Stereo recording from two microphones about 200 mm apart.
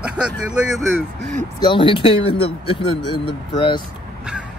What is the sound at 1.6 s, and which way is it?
Speech, 25° left (ahead or behind).